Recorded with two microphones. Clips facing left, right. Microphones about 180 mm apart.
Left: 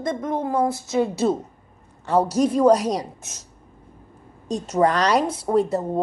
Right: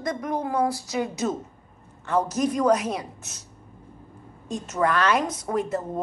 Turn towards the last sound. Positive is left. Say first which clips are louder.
# left 6 dB
turn(degrees=35)  # may be behind; listen again after turning